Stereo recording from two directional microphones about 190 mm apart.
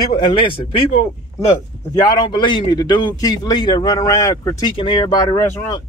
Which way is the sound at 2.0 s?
20° left (ahead or behind).